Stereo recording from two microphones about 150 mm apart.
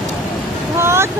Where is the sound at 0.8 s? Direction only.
15° right (ahead or behind).